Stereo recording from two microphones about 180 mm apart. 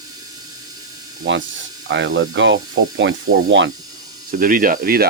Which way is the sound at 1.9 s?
90° right.